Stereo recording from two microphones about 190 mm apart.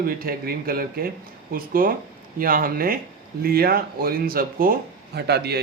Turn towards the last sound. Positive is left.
turn(degrees=-60)  # may be behind; listen again after turning